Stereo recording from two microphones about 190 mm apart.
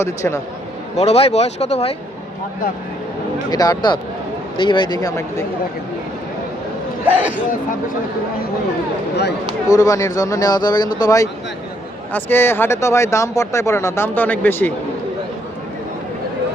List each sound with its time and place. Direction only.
0.0 s speech: 15° left (ahead or behind)
0.9 s speech: 35° left (ahead or behind)
3.5 s speech: 20° left (ahead or behind)
7.0 s speech: 10° right (ahead or behind)
9.6 s speech: 20° left (ahead or behind)